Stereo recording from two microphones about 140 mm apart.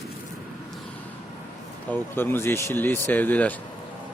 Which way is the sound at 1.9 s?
15° left (ahead or behind).